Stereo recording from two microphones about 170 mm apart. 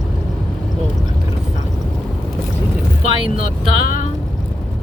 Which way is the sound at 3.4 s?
50° left (ahead or behind).